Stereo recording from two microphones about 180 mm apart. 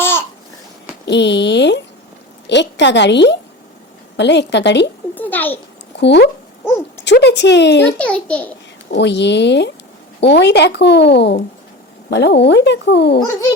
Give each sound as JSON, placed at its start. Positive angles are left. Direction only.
{"t": 0.0, "sound": "babbling", "side_deg": 15}
{"t": 1.0, "sound": "speech", "side_deg": 75}
{"t": 5.1, "sound": "a child's voice", "side_deg": 10}
{"t": 6.0, "sound": "speech", "side_deg": 70}
{"t": 6.7, "sound": "a child's voice", "side_deg": 15}
{"t": 7.0, "sound": "speech", "side_deg": 75}
{"t": 7.9, "sound": "a child's voice", "side_deg": 5}
{"t": 9.0, "sound": "speech", "side_deg": 75}